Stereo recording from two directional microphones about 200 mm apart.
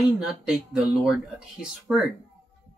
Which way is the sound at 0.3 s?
Centre (ahead or behind).